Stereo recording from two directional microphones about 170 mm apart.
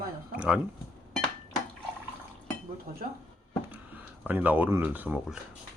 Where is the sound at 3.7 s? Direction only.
10° right (ahead or behind).